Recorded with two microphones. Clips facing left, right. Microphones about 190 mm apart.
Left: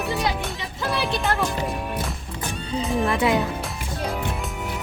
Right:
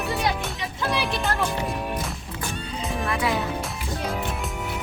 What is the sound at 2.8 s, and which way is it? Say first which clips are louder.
Music: left 6 dB; centre (ahead or behind).